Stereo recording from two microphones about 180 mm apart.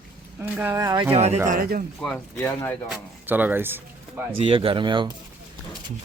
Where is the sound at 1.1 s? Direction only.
35° right (ahead or behind).